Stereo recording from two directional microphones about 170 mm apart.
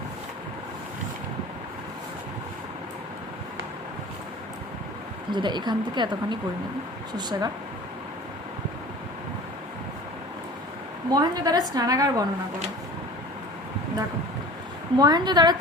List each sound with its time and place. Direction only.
5.3 s speech: 25° right (ahead or behind)
11.1 s speech: 25° right (ahead or behind)
14.9 s speech: 25° right (ahead or behind)